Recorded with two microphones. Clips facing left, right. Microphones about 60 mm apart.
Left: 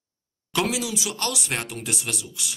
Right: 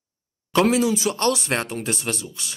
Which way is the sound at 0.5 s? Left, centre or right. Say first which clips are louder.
Right 7 dB; right.